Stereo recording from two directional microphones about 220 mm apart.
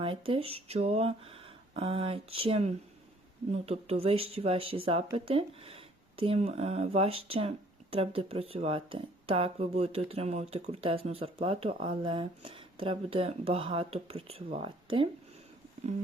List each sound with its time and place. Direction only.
0.0 s speech: 25° right (ahead or behind)